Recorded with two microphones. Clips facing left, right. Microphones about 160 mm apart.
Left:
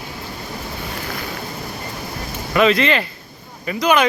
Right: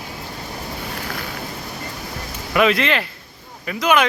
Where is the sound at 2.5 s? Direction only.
5° right (ahead or behind).